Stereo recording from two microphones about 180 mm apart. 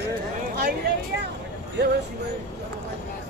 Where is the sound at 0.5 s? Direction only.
60° right (ahead or behind).